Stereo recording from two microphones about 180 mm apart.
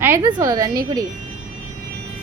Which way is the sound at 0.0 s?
15° right (ahead or behind).